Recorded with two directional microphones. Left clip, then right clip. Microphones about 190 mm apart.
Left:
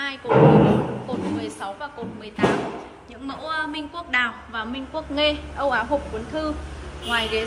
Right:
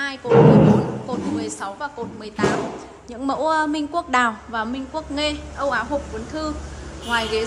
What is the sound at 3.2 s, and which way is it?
Speech, 15° right (ahead or behind).